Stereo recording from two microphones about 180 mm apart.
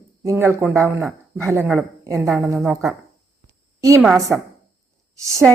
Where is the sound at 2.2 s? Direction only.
Centre (ahead or behind).